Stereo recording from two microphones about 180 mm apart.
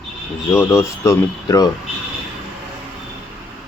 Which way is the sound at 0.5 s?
15° left (ahead or behind).